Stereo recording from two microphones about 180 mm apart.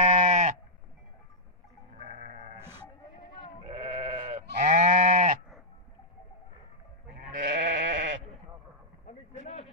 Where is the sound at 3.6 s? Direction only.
30° right (ahead or behind).